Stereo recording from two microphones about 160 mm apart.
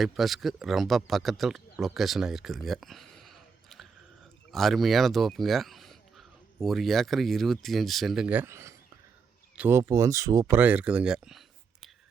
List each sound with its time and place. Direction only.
0.0 s speech: centre (ahead or behind)